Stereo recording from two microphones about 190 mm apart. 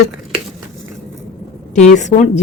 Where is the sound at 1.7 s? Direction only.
40° left (ahead or behind).